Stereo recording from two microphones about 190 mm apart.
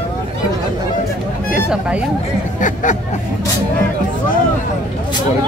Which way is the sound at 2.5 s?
40° left (ahead or behind).